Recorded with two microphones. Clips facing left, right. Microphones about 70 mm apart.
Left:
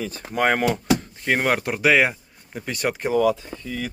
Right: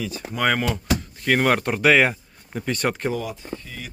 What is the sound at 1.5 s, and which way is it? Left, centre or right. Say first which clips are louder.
Speech: right 1 dB; centre.